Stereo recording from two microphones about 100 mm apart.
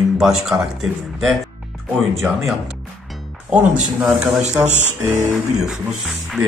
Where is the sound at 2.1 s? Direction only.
Centre (ahead or behind).